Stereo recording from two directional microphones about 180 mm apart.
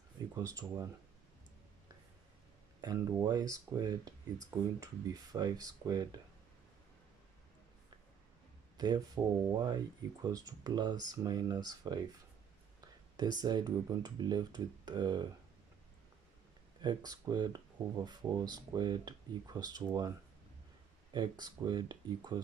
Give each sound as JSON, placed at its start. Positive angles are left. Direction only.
{"t": 0.4, "sound": "speech", "side_deg": -20}
{"t": 2.8, "sound": "speech", "side_deg": -20}
{"t": 8.7, "sound": "speech", "side_deg": -20}
{"t": 13.1, "sound": "speech", "side_deg": -25}
{"t": 16.8, "sound": "speech", "side_deg": -20}
{"t": 21.1, "sound": "speech", "side_deg": -25}